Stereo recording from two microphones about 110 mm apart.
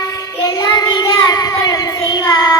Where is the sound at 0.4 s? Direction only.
35° left (ahead or behind).